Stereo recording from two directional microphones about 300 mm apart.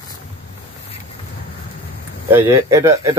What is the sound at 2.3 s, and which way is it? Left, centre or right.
Speech, centre.